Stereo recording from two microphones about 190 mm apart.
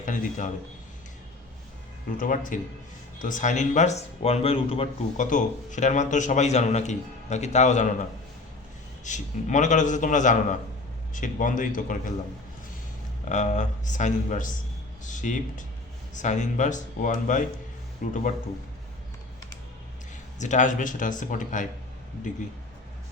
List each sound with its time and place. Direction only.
0.0 s a sound: 40° left (ahead or behind)
2.1 s speech: 45° left (ahead or behind)
9.0 s speech: 40° left (ahead or behind)
13.2 s speech: 40° left (ahead or behind)
20.4 s speech: 40° left (ahead or behind)